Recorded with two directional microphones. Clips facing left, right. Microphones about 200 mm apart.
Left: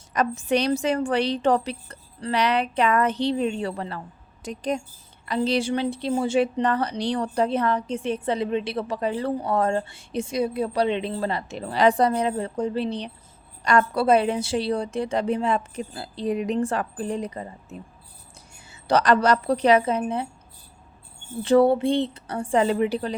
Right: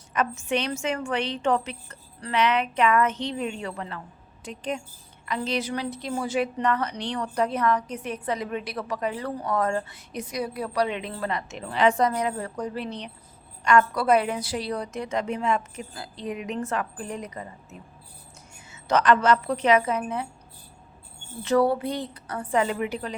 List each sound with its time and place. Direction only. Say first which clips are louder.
0.1 s a woman's voice: left 4 dB; 35° left (ahead or behind)
21.4 s a woman's voice: left 4 dB; 25° left (ahead or behind)